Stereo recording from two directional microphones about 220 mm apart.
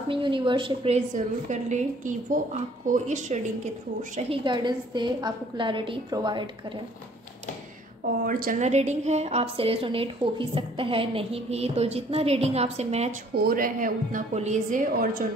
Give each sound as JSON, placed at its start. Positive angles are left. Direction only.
{"t": 0.1, "sound": "a woman's voice", "side_deg": -20}
{"t": 4.2, "sound": "a woman's voice", "side_deg": -25}
{"t": 8.3, "sound": "a woman's voice", "side_deg": -40}
{"t": 13.3, "sound": "a woman's voice", "side_deg": -45}